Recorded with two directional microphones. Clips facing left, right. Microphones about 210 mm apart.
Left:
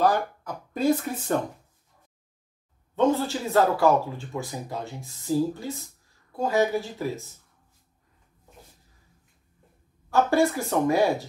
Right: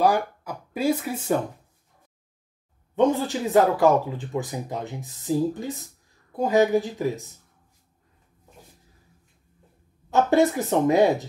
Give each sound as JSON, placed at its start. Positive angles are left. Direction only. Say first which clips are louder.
{"t": 0.0, "sound": "speech", "louder": "right 2 dB", "side_deg": -10}
{"t": 3.0, "sound": "speech", "louder": "right 2 dB", "side_deg": -15}
{"t": 10.0, "sound": "speech", "louder": "right 2 dB", "side_deg": -20}